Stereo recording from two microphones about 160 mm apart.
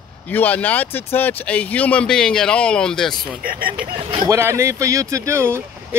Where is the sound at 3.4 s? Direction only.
65° right (ahead or behind).